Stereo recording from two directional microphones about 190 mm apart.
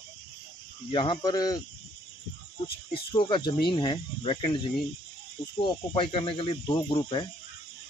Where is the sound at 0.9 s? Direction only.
25° left (ahead or behind).